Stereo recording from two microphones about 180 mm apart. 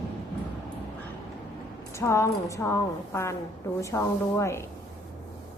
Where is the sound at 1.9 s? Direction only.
15° left (ahead or behind).